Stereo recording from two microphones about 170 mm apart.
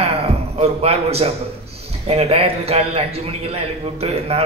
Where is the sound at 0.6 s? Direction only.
35° right (ahead or behind).